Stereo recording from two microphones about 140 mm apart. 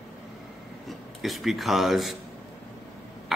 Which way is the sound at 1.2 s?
Centre (ahead or behind).